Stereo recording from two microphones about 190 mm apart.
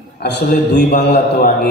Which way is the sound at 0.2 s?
60° left (ahead or behind).